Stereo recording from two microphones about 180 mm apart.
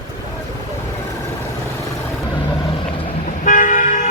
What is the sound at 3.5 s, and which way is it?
Toot, 45° left (ahead or behind).